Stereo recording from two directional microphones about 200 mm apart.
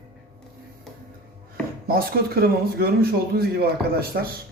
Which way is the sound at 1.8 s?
50° right (ahead or behind).